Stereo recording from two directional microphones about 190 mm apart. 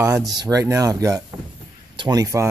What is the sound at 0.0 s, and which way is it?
Speech, 15° right (ahead or behind).